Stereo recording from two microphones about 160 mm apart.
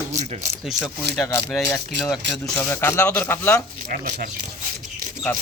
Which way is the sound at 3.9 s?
55° right (ahead or behind).